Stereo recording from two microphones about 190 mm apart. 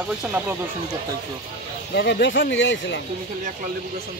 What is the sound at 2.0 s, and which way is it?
Speech, 65° left (ahead or behind).